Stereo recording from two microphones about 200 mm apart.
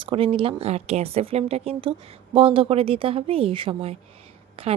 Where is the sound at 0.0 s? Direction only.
25° right (ahead or behind).